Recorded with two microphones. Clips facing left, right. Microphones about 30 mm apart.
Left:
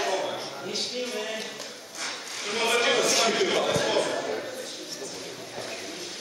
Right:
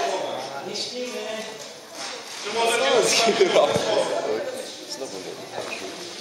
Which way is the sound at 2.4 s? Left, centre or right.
Centre.